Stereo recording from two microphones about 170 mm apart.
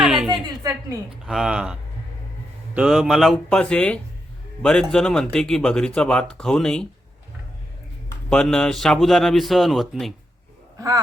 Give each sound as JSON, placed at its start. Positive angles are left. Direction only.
{"t": 0.0, "sound": "a sound", "side_deg": -5}
{"t": 0.6, "sound": "a woman's voice", "side_deg": -20}
{"t": 1.2, "sound": "speech", "side_deg": -5}
{"t": 8.3, "sound": "speech", "side_deg": 5}
{"t": 10.8, "sound": "speech", "side_deg": -20}